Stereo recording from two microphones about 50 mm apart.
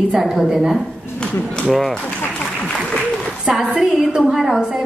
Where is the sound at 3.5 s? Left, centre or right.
Centre.